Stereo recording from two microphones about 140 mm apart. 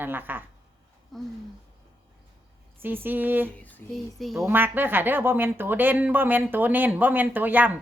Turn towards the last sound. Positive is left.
turn(degrees=-10)  # may be behind; listen again after turning